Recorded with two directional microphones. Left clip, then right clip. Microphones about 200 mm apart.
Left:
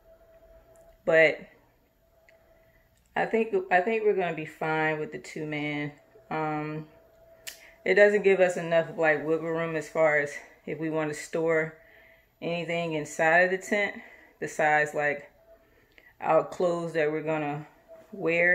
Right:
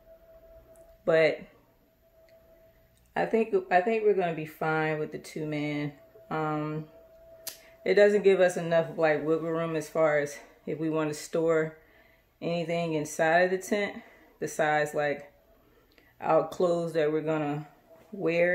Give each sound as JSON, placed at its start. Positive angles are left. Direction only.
{"t": 1.0, "sound": "speech", "side_deg": -10}
{"t": 3.1, "sound": "speech", "side_deg": -15}
{"t": 7.8, "sound": "speech", "side_deg": -15}
{"t": 16.2, "sound": "speech", "side_deg": -15}